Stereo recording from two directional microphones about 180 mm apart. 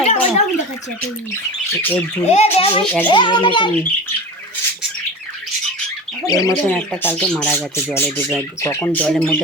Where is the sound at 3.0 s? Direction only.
25° left (ahead or behind).